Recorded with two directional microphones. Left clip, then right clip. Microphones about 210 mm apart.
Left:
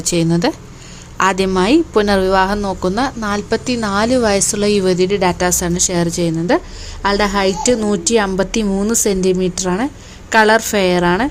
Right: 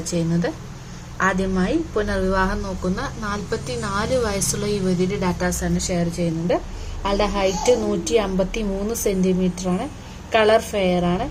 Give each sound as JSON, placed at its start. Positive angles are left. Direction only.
{"t": 0.1, "sound": "a woman's voice", "side_deg": 45}